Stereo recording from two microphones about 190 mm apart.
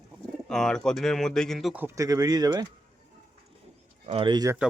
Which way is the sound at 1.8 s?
20° right (ahead or behind).